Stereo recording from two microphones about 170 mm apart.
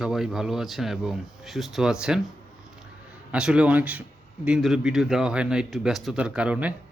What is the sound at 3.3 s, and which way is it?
Speech, 5° right (ahead or behind).